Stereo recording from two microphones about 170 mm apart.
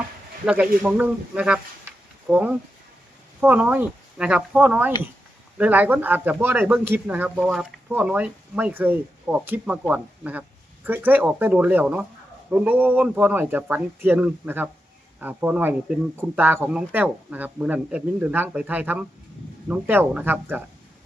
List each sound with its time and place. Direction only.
0.4 s speech: 5° right (ahead or behind)